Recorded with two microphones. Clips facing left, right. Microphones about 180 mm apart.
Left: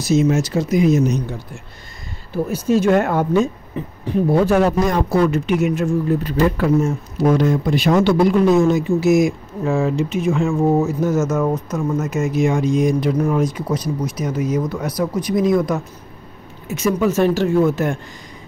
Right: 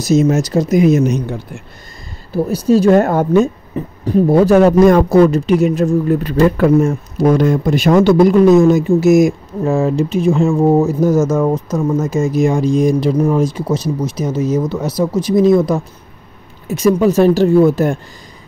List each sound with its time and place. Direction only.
0.0 s speech: 40° right (ahead or behind)
0.8 s speech: 55° right (ahead or behind)
2.3 s speech: 35° right (ahead or behind)
6.2 s speech: 55° right (ahead or behind); by 17.9 s 35° right (ahead or behind)